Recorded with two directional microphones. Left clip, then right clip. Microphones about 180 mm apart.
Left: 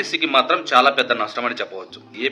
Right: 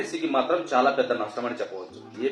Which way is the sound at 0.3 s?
25° left (ahead or behind).